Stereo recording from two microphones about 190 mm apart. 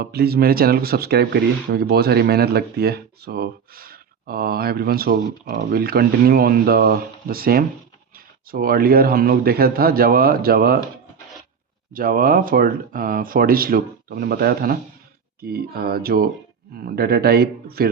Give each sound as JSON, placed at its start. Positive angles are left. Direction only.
{"t": 0.0, "sound": "speech", "side_deg": -55}
{"t": 11.9, "sound": "speech", "side_deg": -50}